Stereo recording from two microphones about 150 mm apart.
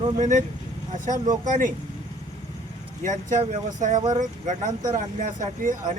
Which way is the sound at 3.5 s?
55° right (ahead or behind).